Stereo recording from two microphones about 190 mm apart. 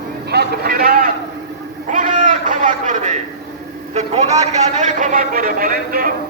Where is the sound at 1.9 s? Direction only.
45° right (ahead or behind).